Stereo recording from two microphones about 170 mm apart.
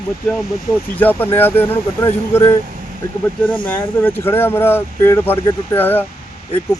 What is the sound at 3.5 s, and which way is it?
Speech, 30° left (ahead or behind).